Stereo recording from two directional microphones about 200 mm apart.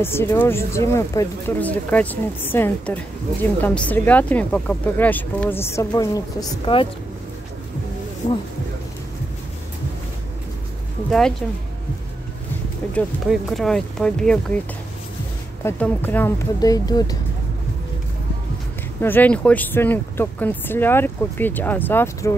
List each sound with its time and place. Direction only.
0.0 s speech: 10° left (ahead or behind)
8.2 s speech: 35° left (ahead or behind)
11.1 s speech: 5° left (ahead or behind)
12.9 s speech: centre (ahead or behind)
15.6 s speech: 10° left (ahead or behind)
18.9 s speech: 10° left (ahead or behind)